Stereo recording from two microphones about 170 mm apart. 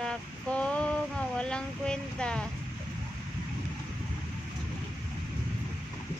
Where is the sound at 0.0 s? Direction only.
5° left (ahead or behind).